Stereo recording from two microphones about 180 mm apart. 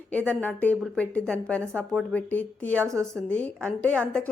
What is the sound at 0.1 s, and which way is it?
Speech, 5° left (ahead or behind).